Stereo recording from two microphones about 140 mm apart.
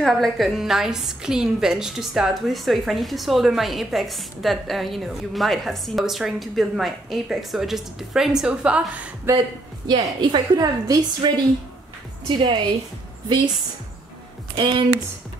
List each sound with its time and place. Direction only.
0.0 s a woman's voice: centre (ahead or behind)
9.8 s a woman's voice: 30° right (ahead or behind)
12.4 s a woman's voice: 35° right (ahead or behind)
14.6 s a woman's voice: 35° right (ahead or behind)